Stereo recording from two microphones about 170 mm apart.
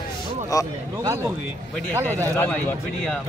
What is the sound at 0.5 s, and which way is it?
Speech, 20° left (ahead or behind).